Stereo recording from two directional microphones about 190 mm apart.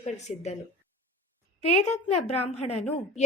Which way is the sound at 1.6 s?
35° left (ahead or behind).